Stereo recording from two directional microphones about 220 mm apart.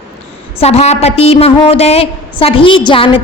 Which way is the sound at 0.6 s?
30° left (ahead or behind).